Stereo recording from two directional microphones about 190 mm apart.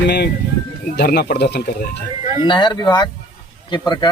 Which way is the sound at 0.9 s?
60° left (ahead or behind).